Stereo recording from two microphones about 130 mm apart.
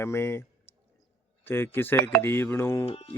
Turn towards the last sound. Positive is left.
turn(degrees=50)  # may be behind; listen again after turning